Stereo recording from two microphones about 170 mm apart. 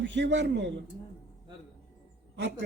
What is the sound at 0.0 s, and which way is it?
Speech, 90° right.